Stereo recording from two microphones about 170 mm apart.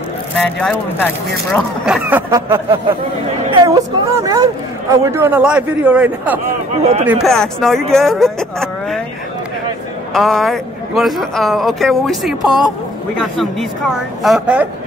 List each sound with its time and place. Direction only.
0.4 s speech: 10° left (ahead or behind)
1.9 s a man's voice: 10° right (ahead or behind)
6.4 s speech: 40° right (ahead or behind)
7.2 s a man's voice: centre (ahead or behind)
10.1 s a man's voice: centre (ahead or behind)